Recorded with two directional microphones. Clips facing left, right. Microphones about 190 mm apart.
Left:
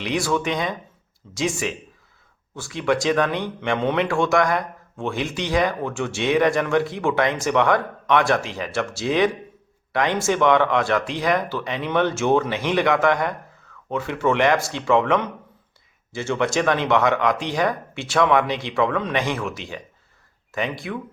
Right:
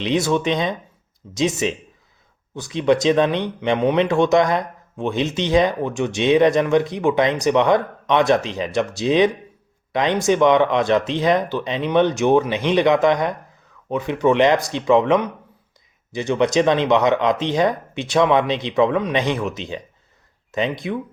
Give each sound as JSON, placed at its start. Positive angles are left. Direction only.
{"t": 0.0, "sound": "speech", "side_deg": -20}